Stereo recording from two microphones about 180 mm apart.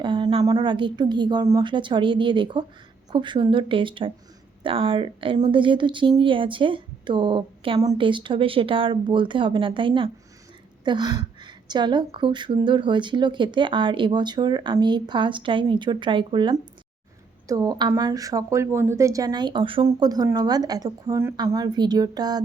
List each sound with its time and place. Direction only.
0.0 s a woman's voice: 30° right (ahead or behind)